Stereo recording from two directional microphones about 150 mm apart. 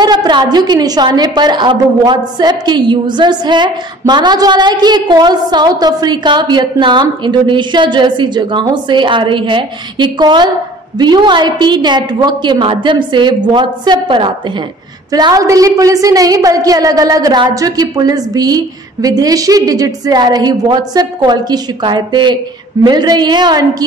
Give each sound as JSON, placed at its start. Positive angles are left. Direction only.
{"t": 0.0, "sound": "a woman's voice", "side_deg": -30}